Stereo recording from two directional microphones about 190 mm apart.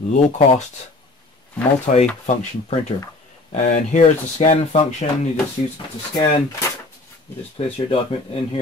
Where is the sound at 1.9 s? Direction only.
40° left (ahead or behind).